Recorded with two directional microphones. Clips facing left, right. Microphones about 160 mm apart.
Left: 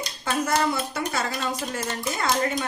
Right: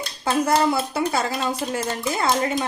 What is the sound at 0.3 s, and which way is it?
Speech, 30° right (ahead or behind).